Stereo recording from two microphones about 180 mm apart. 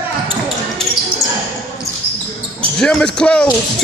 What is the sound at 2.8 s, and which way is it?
Speech, 5° left (ahead or behind).